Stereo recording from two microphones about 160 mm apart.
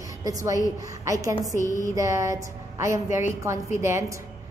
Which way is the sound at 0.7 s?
20° right (ahead or behind).